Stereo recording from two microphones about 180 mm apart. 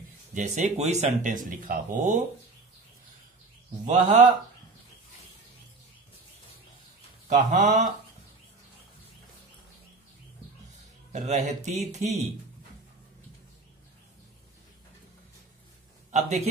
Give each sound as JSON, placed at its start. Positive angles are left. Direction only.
{"t": 0.3, "sound": "speech", "side_deg": -45}
{"t": 3.8, "sound": "speech", "side_deg": -40}
{"t": 7.2, "sound": "speech", "side_deg": -45}
{"t": 11.1, "sound": "speech", "side_deg": -40}
{"t": 16.1, "sound": "a man's voice", "side_deg": -40}